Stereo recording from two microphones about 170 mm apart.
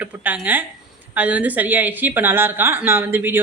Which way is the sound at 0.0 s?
10° right (ahead or behind).